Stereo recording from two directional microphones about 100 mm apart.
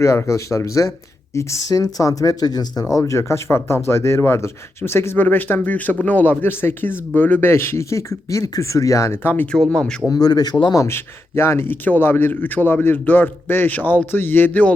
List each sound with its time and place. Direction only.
0.0 s speech: 30° left (ahead or behind)
2.9 s speech: 30° left (ahead or behind)
9.3 s speech: 15° left (ahead or behind)
10.1 s speech: 40° left (ahead or behind)
10.8 s speech: 25° left (ahead or behind)